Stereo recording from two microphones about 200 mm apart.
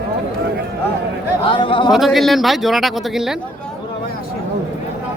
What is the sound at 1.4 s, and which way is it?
Speech, 25° left (ahead or behind).